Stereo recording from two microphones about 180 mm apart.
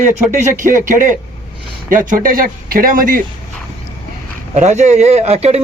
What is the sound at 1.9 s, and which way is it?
Speech, 50° right (ahead or behind).